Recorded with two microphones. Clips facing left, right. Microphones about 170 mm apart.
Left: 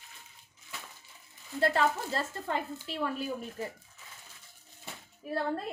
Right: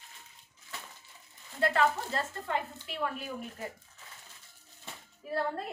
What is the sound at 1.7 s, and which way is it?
A woman's voice, 35° left (ahead or behind).